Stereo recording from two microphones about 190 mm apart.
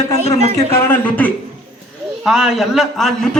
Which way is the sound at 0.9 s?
10° left (ahead or behind).